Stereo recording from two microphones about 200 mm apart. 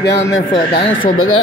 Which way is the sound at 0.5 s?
25° left (ahead or behind).